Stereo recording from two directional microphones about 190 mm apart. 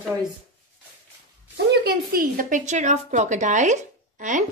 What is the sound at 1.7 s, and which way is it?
A woman's voice, 50° right (ahead or behind).